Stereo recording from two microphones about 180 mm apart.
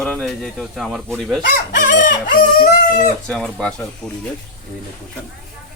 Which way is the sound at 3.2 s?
5° left (ahead or behind).